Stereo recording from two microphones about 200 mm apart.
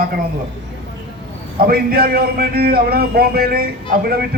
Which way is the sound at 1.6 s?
50° right (ahead or behind).